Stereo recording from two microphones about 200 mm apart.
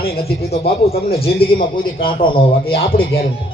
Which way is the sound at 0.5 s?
30° left (ahead or behind).